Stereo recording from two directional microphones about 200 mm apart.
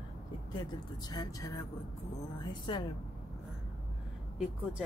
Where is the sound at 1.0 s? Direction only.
20° left (ahead or behind).